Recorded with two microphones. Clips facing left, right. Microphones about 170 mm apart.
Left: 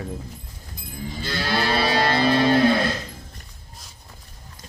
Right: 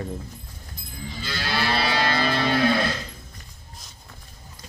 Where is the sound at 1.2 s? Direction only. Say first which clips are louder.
Left 3 dB; 40° left (ahead or behind).